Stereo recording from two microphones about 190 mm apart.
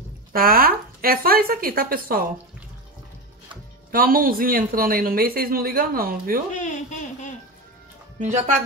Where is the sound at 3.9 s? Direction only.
50° right (ahead or behind).